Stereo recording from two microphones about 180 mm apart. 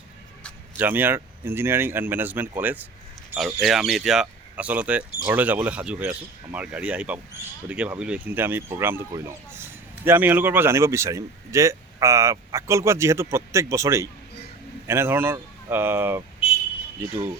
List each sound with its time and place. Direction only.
0.8 s speech: 10° right (ahead or behind)